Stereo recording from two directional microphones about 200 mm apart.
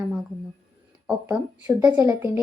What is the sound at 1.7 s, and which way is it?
Speech, 20° right (ahead or behind).